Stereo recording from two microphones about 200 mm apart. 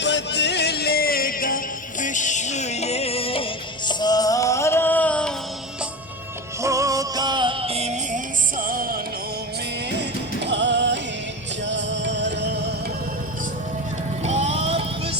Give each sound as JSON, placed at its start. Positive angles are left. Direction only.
{"t": 0.0, "sound": "music", "side_deg": 60}
{"t": 6.6, "sound": "music", "side_deg": -15}
{"t": 10.4, "sound": "music", "side_deg": -60}
{"t": 14.3, "sound": "music", "side_deg": -35}